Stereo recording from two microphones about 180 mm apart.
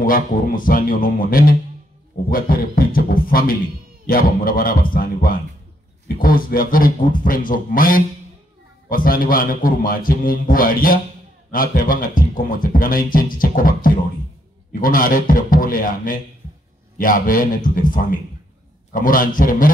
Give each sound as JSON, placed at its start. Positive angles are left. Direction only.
{"t": 0.0, "sound": "speech", "side_deg": 50}